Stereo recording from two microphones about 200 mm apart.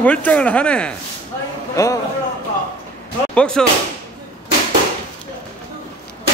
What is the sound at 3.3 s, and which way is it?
Speech, 5° left (ahead or behind).